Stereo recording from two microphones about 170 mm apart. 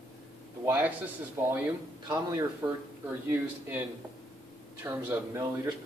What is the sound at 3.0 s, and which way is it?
Speech, 10° right (ahead or behind).